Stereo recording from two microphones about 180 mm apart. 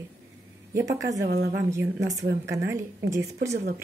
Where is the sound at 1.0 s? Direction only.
75° right (ahead or behind).